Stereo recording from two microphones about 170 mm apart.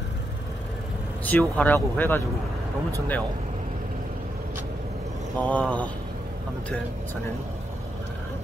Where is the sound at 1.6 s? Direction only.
10° left (ahead or behind).